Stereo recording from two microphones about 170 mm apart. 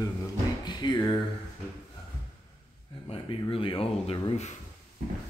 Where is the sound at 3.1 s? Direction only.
30° left (ahead or behind).